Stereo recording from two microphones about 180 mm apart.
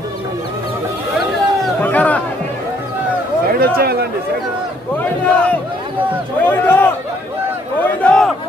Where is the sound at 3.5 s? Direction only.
60° right (ahead or behind).